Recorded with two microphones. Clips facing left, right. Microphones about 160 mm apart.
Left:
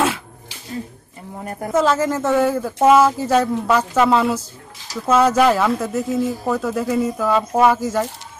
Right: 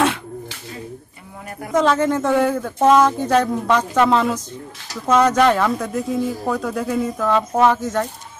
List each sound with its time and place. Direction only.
1.4 s speech: 40° left (ahead or behind)
1.7 s speech: 5° left (ahead or behind)